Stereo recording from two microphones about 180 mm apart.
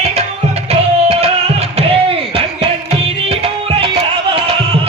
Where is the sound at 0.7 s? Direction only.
35° right (ahead or behind).